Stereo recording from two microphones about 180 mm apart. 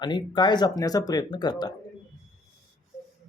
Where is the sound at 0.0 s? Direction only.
25° left (ahead or behind).